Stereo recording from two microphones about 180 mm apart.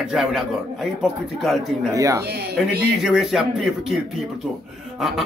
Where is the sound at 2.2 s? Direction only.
65° right (ahead or behind).